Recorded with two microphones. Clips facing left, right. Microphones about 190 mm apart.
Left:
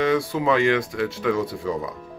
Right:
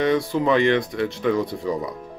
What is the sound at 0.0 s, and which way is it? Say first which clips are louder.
Speech: right 1 dB; centre (ahead or behind).